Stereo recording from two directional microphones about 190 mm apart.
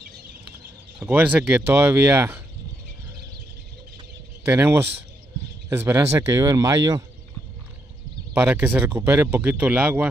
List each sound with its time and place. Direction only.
0.9 s speech: 10° right (ahead or behind)
4.4 s speech: 10° right (ahead or behind)
8.4 s speech: 10° right (ahead or behind)